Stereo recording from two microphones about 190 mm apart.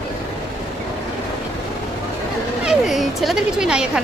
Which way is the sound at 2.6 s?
Centre (ahead or behind).